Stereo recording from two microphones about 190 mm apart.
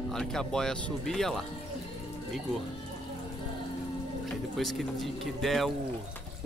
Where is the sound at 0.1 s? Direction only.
5° left (ahead or behind).